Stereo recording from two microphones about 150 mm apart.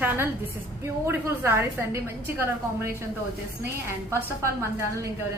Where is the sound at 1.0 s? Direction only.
15° right (ahead or behind).